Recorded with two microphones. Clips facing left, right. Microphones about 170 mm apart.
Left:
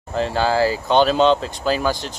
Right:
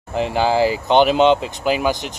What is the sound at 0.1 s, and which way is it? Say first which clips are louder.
Speech: right 1 dB; 15° right (ahead or behind).